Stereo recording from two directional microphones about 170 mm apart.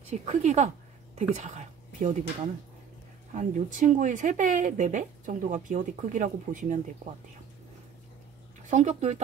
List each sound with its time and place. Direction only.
0.1 s a woman's voice: 40° right (ahead or behind)
3.3 s speech: 50° right (ahead or behind)
8.6 s speech: 45° right (ahead or behind)